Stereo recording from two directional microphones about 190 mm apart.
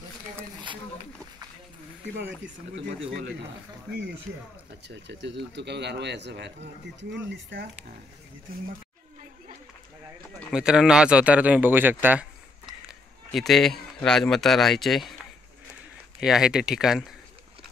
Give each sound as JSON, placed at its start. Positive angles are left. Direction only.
{"t": 2.1, "sound": "speech", "side_deg": -70}
{"t": 4.8, "sound": "speech", "side_deg": -65}
{"t": 10.5, "sound": "speech", "side_deg": -5}
{"t": 16.2, "sound": "speech", "side_deg": -5}